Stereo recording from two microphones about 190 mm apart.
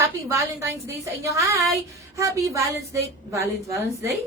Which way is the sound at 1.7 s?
15° right (ahead or behind).